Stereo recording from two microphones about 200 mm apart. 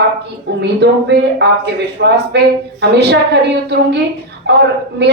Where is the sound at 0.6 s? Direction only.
60° right (ahead or behind).